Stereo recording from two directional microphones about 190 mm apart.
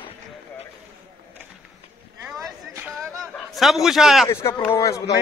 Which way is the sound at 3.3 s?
Centre (ahead or behind).